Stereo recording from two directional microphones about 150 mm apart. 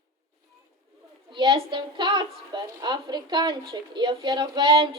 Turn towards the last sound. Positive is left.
turn(degrees=-35)  # may be behind; listen again after turning